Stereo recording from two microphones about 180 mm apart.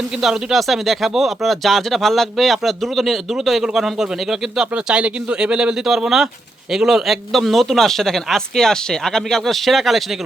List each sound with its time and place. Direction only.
0.2 s speech: centre (ahead or behind)